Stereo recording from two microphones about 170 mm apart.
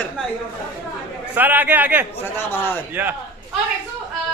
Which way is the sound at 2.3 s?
10° left (ahead or behind).